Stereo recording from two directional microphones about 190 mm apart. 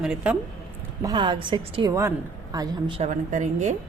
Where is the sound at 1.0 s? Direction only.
25° right (ahead or behind).